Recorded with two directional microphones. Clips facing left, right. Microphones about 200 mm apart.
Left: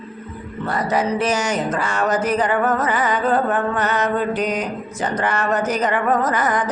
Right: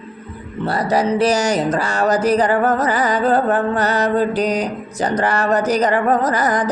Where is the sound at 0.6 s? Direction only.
35° right (ahead or behind).